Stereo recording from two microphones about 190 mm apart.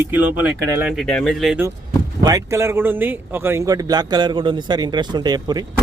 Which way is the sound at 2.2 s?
20° right (ahead or behind).